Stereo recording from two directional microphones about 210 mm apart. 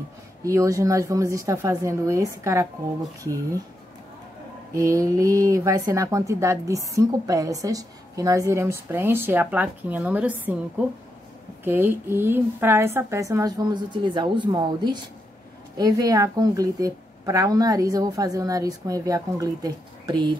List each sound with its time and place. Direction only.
0.4 s speech: 15° right (ahead or behind)
4.7 s speech: 15° right (ahead or behind)